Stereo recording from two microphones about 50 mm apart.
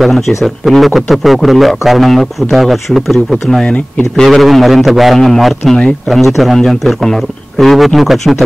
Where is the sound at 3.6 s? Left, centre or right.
Left.